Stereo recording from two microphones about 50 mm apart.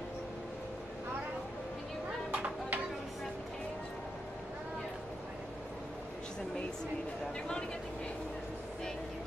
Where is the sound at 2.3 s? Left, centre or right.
Right.